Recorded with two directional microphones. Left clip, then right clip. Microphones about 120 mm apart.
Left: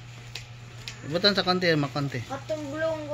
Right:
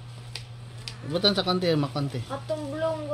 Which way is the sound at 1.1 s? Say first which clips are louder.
Left 1 dB; 10° right (ahead or behind).